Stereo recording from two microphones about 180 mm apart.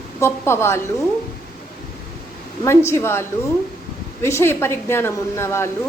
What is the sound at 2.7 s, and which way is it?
A woman's voice, 15° left (ahead or behind).